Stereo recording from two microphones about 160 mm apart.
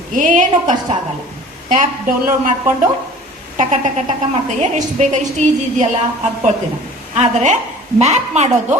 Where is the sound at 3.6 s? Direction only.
40° right (ahead or behind).